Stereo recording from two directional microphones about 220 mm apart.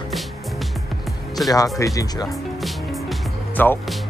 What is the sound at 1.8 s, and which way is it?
Speech, 15° left (ahead or behind).